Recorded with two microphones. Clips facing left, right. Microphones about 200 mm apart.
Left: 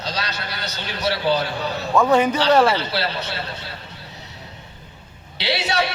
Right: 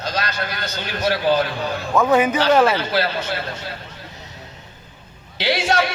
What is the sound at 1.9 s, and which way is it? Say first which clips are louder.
Speech: even; centre (ahead or behind).